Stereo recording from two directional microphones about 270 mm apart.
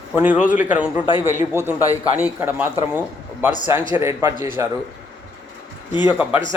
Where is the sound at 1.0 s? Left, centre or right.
Centre.